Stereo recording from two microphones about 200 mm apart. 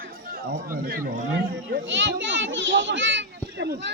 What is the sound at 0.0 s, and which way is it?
Speech, 45° right (ahead or behind).